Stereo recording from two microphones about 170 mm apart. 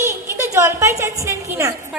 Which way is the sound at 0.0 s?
15° right (ahead or behind).